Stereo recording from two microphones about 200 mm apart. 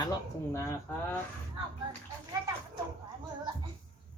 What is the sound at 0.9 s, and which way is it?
Speech, 10° left (ahead or behind).